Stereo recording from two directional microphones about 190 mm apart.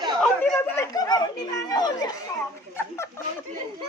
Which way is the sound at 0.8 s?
20° left (ahead or behind).